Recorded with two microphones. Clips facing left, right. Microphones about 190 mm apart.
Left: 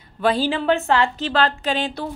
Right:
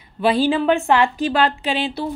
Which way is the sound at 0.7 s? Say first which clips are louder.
Right 2 dB; 15° right (ahead or behind).